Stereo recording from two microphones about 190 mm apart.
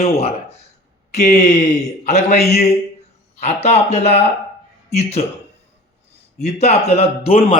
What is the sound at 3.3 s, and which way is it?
A man's voice, 35° left (ahead or behind).